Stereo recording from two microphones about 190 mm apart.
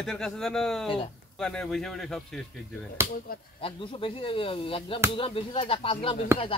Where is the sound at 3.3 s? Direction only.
50° left (ahead or behind).